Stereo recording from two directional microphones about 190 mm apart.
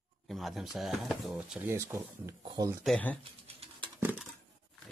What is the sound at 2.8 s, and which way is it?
Speech, 5° left (ahead or behind).